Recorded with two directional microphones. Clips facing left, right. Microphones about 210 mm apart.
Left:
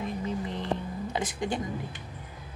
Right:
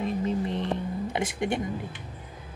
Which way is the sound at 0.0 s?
20° right (ahead or behind).